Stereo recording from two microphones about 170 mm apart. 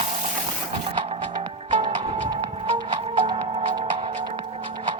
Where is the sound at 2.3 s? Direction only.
25° right (ahead or behind).